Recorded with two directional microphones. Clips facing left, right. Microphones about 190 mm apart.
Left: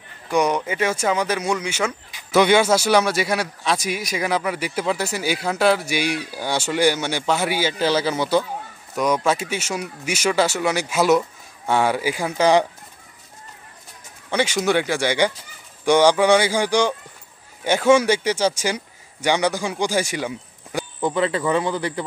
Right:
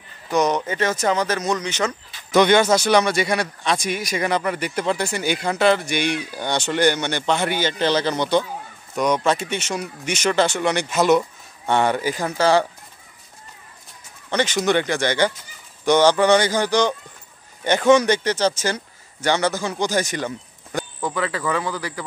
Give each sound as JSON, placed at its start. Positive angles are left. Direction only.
{"t": 0.3, "sound": "speech", "side_deg": 10}
{"t": 14.3, "sound": "speech", "side_deg": 10}
{"t": 21.0, "sound": "speech", "side_deg": 25}